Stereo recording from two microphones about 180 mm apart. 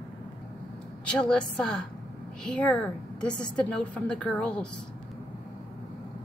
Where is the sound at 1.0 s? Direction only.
5° left (ahead or behind).